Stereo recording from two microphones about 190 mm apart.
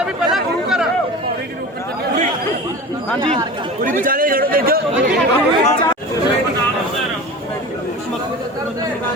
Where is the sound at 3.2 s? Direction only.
25° right (ahead or behind).